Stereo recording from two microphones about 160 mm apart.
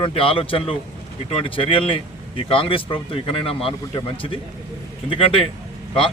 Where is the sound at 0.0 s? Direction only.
35° left (ahead or behind).